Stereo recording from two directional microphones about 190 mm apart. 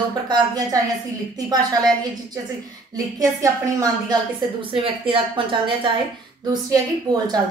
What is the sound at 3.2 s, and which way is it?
A woman's voice, 15° right (ahead or behind).